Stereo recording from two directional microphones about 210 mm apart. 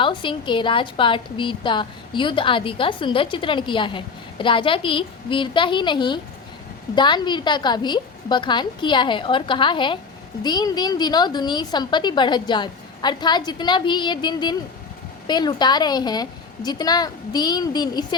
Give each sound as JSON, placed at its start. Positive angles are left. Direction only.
{"t": 0.0, "sound": "a woman's voice", "side_deg": 25}